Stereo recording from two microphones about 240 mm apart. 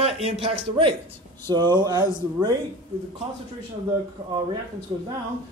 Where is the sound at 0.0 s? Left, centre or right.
Right.